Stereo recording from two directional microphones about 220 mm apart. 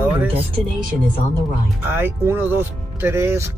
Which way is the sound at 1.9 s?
10° right (ahead or behind).